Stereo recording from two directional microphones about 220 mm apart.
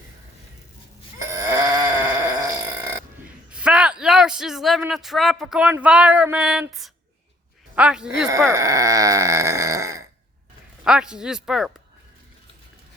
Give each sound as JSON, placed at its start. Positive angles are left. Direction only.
{"t": 1.2, "sound": "a sound", "side_deg": -15}
{"t": 3.2, "sound": "a man's voice", "side_deg": -5}
{"t": 8.3, "sound": "speech", "side_deg": -15}
{"t": 10.8, "sound": "speech", "side_deg": -5}